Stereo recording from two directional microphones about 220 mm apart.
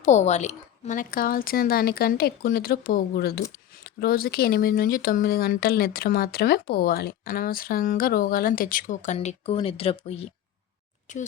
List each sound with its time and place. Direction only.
0.0 s speech: 30° left (ahead or behind)